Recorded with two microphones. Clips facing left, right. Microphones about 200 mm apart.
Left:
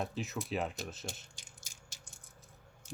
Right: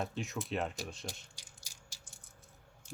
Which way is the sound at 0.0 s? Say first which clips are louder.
Even; centre (ahead or behind).